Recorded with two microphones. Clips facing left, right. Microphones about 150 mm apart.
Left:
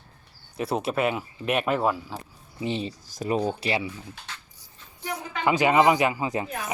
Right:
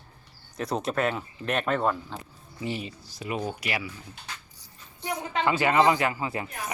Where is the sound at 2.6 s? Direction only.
20° left (ahead or behind).